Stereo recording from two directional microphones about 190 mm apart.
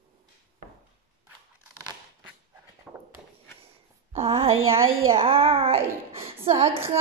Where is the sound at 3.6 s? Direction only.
30° right (ahead or behind).